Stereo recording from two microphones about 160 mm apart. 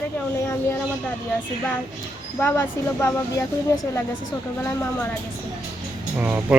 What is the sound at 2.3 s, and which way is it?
Speech, 15° left (ahead or behind).